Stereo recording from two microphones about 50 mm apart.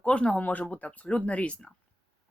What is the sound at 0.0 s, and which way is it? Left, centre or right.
Speech, left.